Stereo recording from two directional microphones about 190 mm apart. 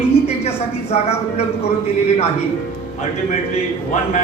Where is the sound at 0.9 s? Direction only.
35° left (ahead or behind).